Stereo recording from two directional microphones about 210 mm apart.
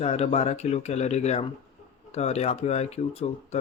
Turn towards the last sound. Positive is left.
turn(degrees=30)  # may be behind; listen again after turning